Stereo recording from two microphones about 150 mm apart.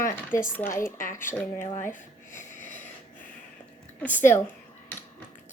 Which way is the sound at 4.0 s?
10° left (ahead or behind).